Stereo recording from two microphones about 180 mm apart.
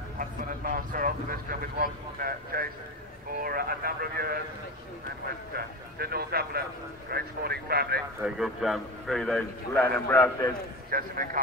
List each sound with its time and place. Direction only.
0.9 s speech: 50° right (ahead or behind)
5.5 s speech: 60° right (ahead or behind)
8.2 s a man's voice: centre (ahead or behind); by 10.5 s 15° left (ahead or behind)
10.9 s speech: 50° right (ahead or behind)